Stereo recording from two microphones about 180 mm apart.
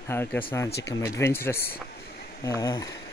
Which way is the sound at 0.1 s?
10° left (ahead or behind).